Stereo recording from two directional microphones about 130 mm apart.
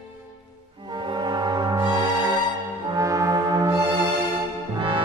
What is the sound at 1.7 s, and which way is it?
Music, 20° right (ahead or behind).